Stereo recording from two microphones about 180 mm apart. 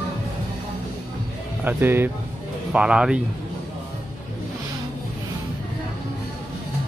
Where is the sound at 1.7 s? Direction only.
10° right (ahead or behind).